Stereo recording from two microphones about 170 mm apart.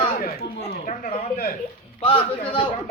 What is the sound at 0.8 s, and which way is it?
Speech, 55° left (ahead or behind).